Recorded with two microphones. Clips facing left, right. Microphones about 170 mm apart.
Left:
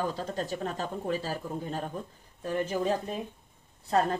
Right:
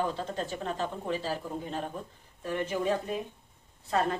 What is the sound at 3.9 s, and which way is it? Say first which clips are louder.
Speech: left 3 dB; 35° left (ahead or behind).